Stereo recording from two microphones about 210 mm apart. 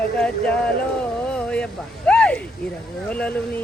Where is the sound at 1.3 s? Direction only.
5° left (ahead or behind).